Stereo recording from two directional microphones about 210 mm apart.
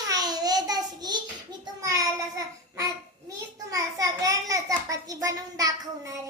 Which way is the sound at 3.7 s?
15° right (ahead or behind).